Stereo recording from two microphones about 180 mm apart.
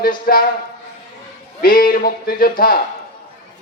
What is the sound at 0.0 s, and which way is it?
Speech, 55° left (ahead or behind).